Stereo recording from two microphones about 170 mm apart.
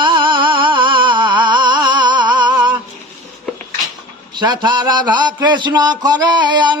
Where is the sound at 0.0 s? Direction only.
30° right (ahead or behind).